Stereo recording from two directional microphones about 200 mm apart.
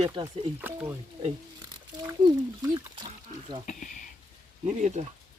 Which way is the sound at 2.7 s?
20° right (ahead or behind).